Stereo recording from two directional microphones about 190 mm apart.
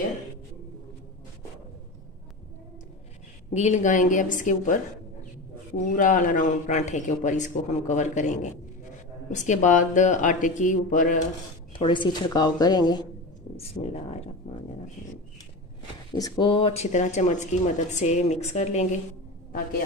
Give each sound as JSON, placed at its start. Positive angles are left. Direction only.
{"t": 3.5, "sound": "speech", "side_deg": 35}
{"t": 5.9, "sound": "speech", "side_deg": 45}
{"t": 11.8, "sound": "speech", "side_deg": 25}
{"t": 13.6, "sound": "speech", "side_deg": 35}
{"t": 16.2, "sound": "speech", "side_deg": 20}